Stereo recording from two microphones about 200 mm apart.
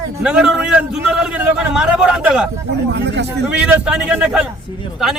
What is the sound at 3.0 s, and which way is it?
Speech, 60° right (ahead or behind).